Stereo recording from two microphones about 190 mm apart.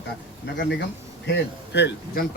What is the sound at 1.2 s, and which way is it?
Speech, 65° left (ahead or behind).